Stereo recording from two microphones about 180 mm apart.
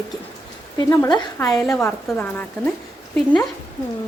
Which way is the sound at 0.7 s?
20° left (ahead or behind).